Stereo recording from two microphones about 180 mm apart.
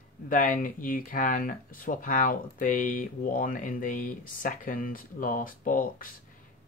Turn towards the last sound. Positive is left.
turn(degrees=50)  # may be behind; listen again after turning